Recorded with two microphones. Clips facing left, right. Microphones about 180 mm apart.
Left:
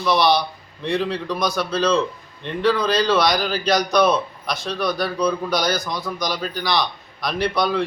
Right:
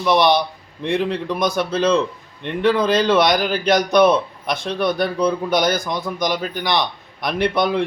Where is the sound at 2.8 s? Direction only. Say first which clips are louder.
Right 3 dB; 50° right (ahead or behind).